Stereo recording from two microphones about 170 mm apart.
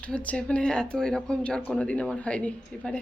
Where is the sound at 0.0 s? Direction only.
10° left (ahead or behind).